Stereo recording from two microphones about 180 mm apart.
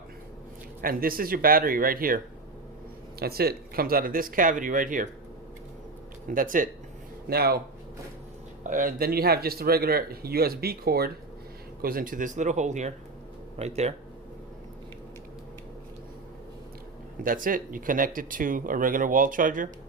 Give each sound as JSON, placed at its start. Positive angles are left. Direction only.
{"t": 0.8, "sound": "speech", "side_deg": -55}
{"t": 6.2, "sound": "speech", "side_deg": -50}
{"t": 7.3, "sound": "speech", "side_deg": -60}
{"t": 8.6, "sound": "speech", "side_deg": -45}
{"t": 17.2, "sound": "speech", "side_deg": -50}